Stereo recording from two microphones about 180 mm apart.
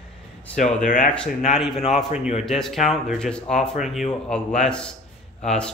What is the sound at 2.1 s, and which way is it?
Speech, 40° left (ahead or behind).